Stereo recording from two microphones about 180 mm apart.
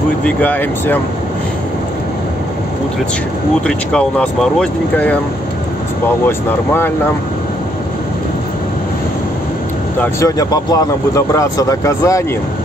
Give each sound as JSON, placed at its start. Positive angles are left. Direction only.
{"t": 0.2, "sound": "speech", "side_deg": 10}
{"t": 3.6, "sound": "speech", "side_deg": 5}
{"t": 6.2, "sound": "speech", "side_deg": 10}
{"t": 9.9, "sound": "speech", "side_deg": 20}